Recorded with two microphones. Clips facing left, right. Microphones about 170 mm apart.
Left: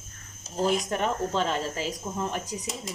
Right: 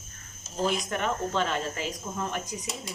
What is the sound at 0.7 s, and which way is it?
Speech, 35° left (ahead or behind).